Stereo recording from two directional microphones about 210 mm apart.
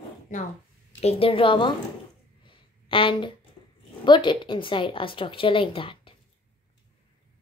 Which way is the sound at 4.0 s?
20° left (ahead or behind).